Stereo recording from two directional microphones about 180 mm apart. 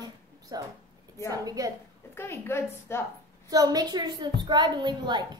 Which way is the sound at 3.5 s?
20° right (ahead or behind).